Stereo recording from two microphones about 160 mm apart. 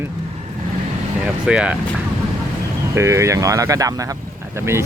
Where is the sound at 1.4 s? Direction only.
5° right (ahead or behind).